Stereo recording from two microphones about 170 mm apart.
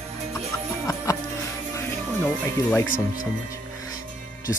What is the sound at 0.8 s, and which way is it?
Music, 20° left (ahead or behind).